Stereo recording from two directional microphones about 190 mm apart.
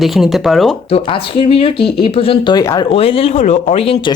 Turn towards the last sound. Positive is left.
turn(degrees=30)  # may be behind; listen again after turning